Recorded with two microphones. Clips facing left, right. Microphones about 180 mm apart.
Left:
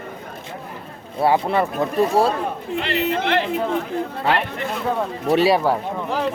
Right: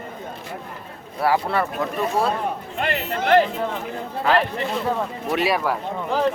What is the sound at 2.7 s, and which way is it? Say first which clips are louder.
Speech: left 5 dB; 50° right (ahead or behind).